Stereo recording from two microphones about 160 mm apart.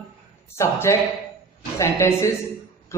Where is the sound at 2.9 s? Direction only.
15° left (ahead or behind).